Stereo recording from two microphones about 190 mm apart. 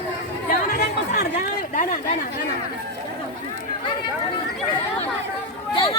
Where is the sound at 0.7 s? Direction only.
50° left (ahead or behind).